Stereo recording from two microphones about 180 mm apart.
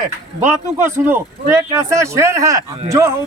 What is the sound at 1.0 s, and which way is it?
A man's voice, 15° right (ahead or behind).